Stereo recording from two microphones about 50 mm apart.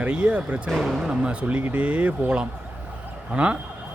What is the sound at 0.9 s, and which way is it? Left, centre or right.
Speech, centre.